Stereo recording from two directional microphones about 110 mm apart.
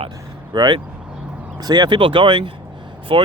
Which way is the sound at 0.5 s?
40° right (ahead or behind).